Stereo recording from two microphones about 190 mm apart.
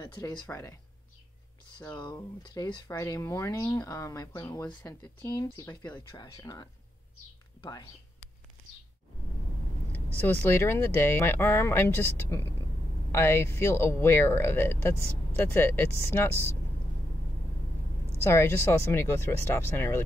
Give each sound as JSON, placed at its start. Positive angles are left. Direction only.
{"t": 0.0, "sound": "speech", "side_deg": 25}
{"t": 2.0, "sound": "speech", "side_deg": 25}
{"t": 9.9, "sound": "speech", "side_deg": 10}
{"t": 18.2, "sound": "speech", "side_deg": 15}